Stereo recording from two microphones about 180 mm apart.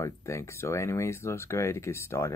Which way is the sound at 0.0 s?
15° left (ahead or behind).